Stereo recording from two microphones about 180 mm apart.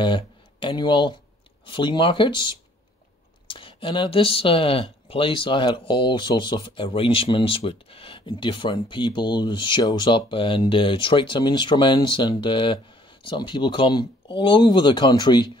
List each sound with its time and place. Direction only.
0.0 s speech: 25° left (ahead or behind)